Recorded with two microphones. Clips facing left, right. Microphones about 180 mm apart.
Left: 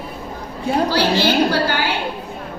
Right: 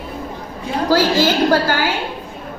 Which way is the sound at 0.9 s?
45° right (ahead or behind).